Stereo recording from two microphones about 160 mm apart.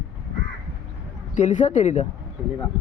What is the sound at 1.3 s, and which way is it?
Speech, 50° left (ahead or behind).